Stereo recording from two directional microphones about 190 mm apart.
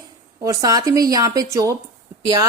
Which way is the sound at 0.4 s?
20° right (ahead or behind).